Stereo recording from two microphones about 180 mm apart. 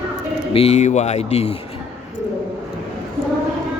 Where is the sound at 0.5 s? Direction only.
35° left (ahead or behind).